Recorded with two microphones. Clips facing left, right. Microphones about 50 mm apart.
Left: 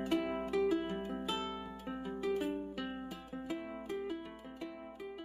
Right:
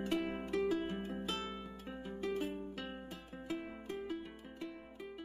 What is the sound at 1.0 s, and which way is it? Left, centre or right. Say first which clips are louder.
Music: left 2 dB; centre.